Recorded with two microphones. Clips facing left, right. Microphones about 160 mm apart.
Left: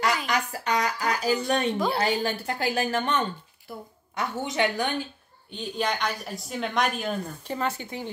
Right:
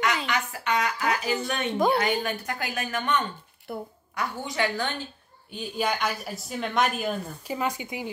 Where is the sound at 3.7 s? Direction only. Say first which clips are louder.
Right 5 dB; 60° right (ahead or behind).